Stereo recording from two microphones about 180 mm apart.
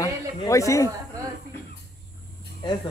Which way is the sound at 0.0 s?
15° left (ahead or behind).